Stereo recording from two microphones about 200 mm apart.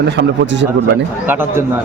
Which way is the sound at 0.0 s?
55° right (ahead or behind).